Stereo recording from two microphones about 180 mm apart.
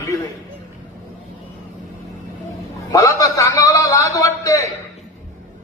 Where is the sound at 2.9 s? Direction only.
20° left (ahead or behind).